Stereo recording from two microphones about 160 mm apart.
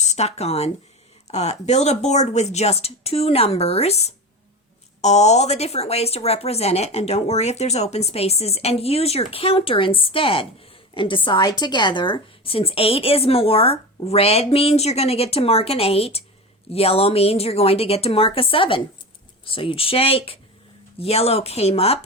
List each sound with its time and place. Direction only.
0.0 s speech: 45° left (ahead or behind)